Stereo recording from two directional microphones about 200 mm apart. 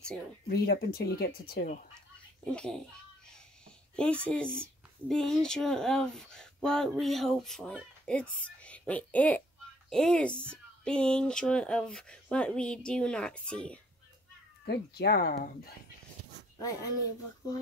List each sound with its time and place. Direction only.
0.5 s speech: 50° left (ahead or behind)
2.4 s speech: 5° left (ahead or behind)
3.9 s speech: 5° left (ahead or behind)
14.6 s speech: 50° left (ahead or behind)
16.5 s speech: 15° left (ahead or behind)